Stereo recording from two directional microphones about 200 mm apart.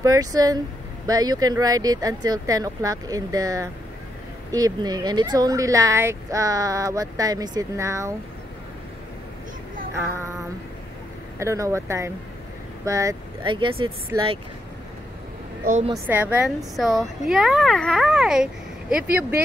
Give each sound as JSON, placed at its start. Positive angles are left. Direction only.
{"t": 0.0, "sound": "speech", "side_deg": -15}
{"t": 11.3, "sound": "speech", "side_deg": -15}
{"t": 15.9, "sound": "a woman's voice", "side_deg": -10}